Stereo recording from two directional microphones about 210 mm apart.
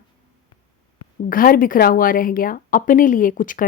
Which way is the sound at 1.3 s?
40° left (ahead or behind).